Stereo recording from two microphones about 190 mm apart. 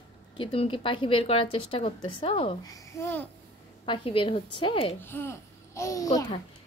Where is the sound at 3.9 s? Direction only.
30° left (ahead or behind).